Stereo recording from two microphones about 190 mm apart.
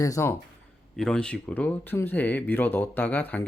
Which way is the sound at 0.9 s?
5° left (ahead or behind).